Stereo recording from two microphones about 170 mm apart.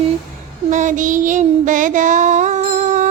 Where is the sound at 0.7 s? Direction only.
50° right (ahead or behind).